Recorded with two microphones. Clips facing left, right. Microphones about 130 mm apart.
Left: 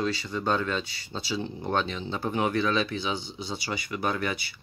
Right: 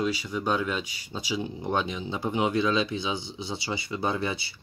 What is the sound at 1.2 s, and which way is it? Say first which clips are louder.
Speech: right 1 dB; 15° right (ahead or behind).